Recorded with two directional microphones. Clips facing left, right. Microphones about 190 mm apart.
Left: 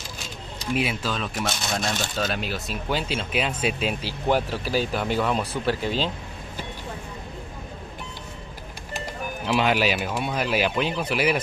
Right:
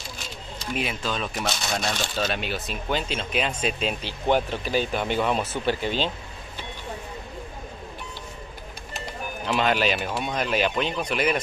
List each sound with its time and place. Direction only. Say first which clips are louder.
0.7 s speech: left 2 dB; 5° left (ahead or behind)
9.5 s speech: left 1 dB; 10° left (ahead or behind)